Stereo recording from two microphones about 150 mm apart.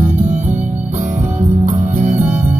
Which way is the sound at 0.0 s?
60° right (ahead or behind).